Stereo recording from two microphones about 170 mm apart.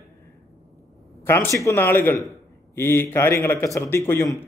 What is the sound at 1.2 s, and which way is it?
A man's voice, 15° left (ahead or behind).